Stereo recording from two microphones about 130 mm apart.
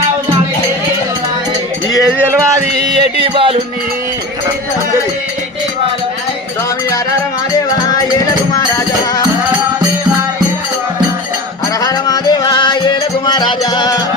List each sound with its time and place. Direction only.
2.0 s music: 10° right (ahead or behind)
3.2 s music: 40° right (ahead or behind)
11.8 s music: 30° left (ahead or behind)